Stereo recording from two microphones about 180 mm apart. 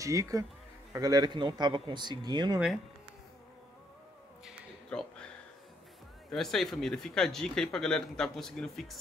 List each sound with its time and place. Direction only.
0.0 s speech: 20° right (ahead or behind)
4.8 s a sound: 5° left (ahead or behind)
6.3 s speech: centre (ahead or behind)